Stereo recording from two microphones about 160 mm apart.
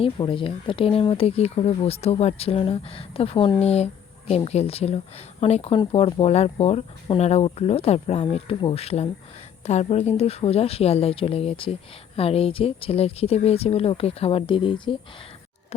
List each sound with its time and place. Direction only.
0.0 s speech: 30° left (ahead or behind)